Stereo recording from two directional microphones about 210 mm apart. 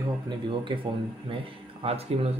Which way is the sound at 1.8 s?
30° right (ahead or behind).